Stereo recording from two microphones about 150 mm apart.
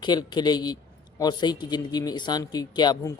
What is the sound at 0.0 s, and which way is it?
A man's voice, 30° left (ahead or behind).